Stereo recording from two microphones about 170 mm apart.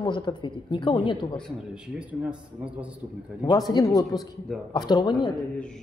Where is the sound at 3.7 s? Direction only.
20° left (ahead or behind).